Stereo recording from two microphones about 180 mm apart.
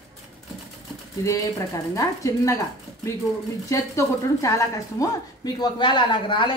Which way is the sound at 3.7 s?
15° left (ahead or behind).